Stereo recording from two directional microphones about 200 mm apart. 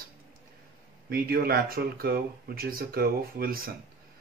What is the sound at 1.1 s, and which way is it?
Speech, 50° right (ahead or behind).